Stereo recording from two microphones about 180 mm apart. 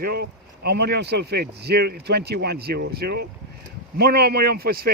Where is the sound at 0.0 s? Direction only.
60° right (ahead or behind).